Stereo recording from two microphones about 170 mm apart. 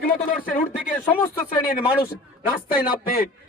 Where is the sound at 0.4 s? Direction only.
55° left (ahead or behind).